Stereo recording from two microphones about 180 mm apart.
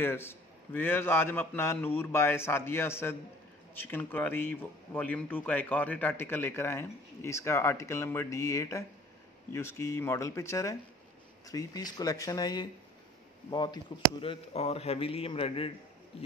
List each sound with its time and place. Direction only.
0.0 s a man's voice: 15° left (ahead or behind); by 15.7 s 30° left (ahead or behind)